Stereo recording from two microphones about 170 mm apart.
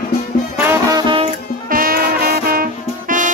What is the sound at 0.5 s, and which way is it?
Music, 15° right (ahead or behind).